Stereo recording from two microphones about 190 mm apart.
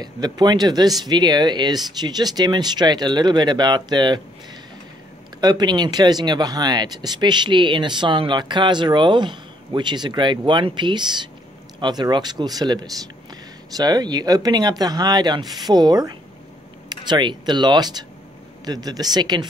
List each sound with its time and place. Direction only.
0.0 s speech: 20° right (ahead or behind)
5.4 s speech: 20° right (ahead or behind)